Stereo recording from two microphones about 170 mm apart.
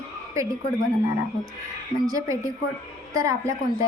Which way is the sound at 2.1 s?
20° right (ahead or behind).